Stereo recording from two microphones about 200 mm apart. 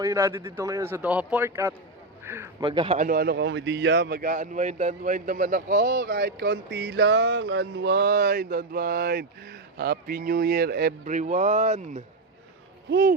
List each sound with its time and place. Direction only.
0.0 s a man's voice: 15° right (ahead or behind)
2.6 s speech: 25° right (ahead or behind)
3.0 s a man's voice: 45° right (ahead or behind)
12.9 s a man's voice: 45° right (ahead or behind)